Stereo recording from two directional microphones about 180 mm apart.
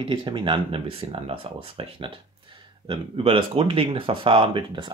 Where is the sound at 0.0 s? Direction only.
25° right (ahead or behind).